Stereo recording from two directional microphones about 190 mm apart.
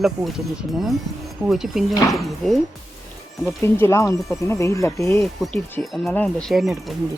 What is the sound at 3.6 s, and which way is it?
Speech, 15° left (ahead or behind).